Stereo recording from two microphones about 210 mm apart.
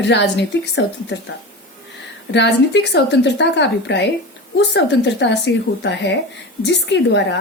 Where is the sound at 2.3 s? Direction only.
55° left (ahead or behind).